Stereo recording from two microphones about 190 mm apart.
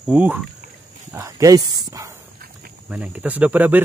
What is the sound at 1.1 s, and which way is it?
Speech, 15° right (ahead or behind).